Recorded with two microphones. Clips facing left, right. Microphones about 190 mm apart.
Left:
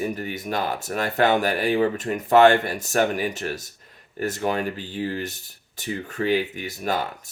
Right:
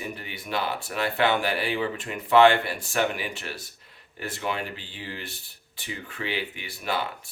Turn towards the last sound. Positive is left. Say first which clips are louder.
# left 4 dB
turn(degrees=45)  # may be behind; listen again after turning